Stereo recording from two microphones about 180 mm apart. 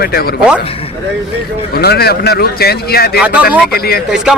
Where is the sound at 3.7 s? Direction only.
60° left (ahead or behind).